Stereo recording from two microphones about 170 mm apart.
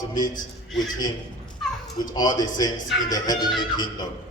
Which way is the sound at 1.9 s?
25° left (ahead or behind).